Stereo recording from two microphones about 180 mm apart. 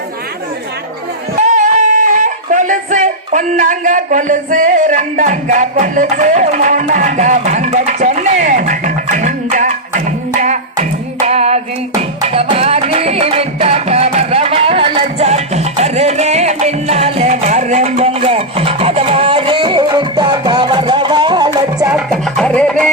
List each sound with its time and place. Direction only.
1.5 s music: 45° right (ahead or behind); by 21.8 s 20° right (ahead or behind)
22.1 s music: 5° left (ahead or behind)